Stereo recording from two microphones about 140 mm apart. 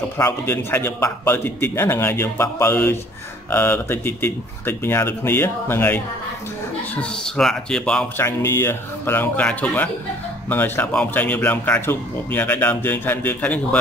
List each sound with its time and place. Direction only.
0.2 s a man's voice: 20° left (ahead or behind)
8.2 s a man's voice: 20° left (ahead or behind)